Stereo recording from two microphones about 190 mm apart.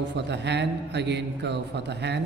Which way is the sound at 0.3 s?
65° right (ahead or behind).